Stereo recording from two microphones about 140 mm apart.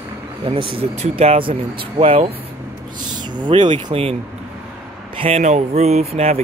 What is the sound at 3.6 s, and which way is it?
Speech, 40° right (ahead or behind).